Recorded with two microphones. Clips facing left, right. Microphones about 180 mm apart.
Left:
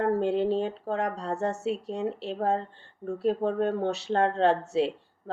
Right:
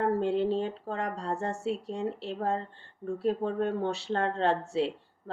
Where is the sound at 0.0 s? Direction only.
60° left (ahead or behind).